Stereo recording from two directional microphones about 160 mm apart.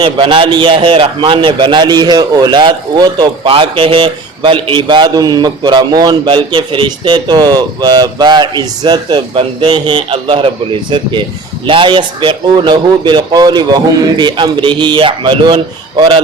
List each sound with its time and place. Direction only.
0.0 s a man's voice: 30° right (ahead or behind)